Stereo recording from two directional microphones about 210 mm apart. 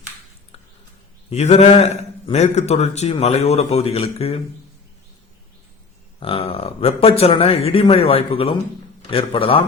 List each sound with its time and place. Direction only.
1.3 s a man's voice: 30° left (ahead or behind)
6.1 s a man's voice: 25° left (ahead or behind)